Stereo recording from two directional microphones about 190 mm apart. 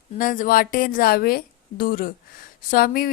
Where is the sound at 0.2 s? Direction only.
45° left (ahead or behind).